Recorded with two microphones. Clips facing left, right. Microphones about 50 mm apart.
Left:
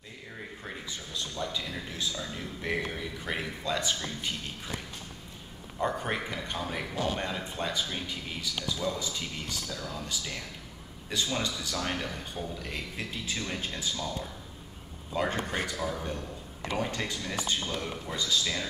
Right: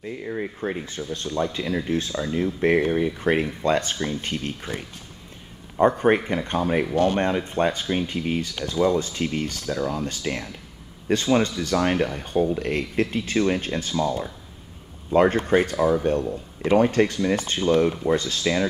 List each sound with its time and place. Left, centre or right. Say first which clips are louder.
0.0 s speech: right 14 dB; right